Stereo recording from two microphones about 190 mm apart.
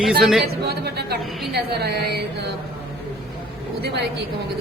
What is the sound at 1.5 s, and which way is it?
Speech, 55° right (ahead or behind).